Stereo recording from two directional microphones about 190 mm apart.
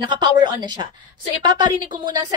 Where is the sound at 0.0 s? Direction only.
25° right (ahead or behind).